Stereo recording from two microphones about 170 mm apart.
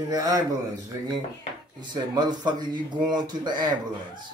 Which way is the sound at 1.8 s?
25° right (ahead or behind).